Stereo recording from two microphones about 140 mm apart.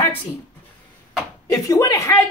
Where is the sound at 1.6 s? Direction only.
25° left (ahead or behind).